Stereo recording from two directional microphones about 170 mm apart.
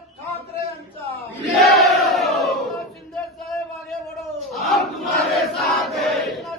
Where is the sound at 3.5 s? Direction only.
Centre (ahead or behind).